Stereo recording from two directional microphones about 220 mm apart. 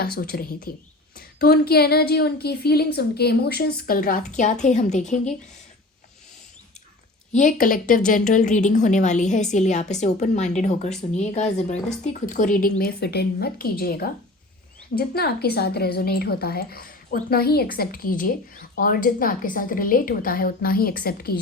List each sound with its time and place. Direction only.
0.2 s a woman's voice: 40° left (ahead or behind)
7.3 s a woman's voice: 35° left (ahead or behind)